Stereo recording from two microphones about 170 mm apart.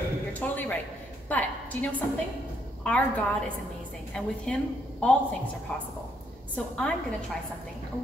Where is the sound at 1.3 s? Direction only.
10° left (ahead or behind).